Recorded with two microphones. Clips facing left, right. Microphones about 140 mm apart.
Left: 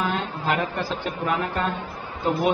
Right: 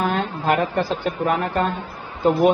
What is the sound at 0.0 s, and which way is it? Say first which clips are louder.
A woman's voice: right 4 dB; 50° right (ahead or behind).